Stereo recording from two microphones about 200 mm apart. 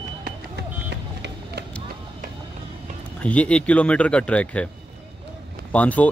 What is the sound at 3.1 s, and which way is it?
Speech, 5° left (ahead or behind).